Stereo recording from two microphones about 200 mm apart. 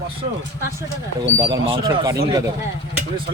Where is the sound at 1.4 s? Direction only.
20° right (ahead or behind).